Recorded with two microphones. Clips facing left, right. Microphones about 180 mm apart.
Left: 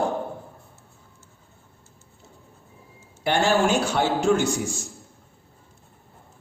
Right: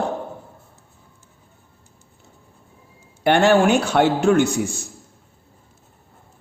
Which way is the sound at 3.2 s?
65° right (ahead or behind).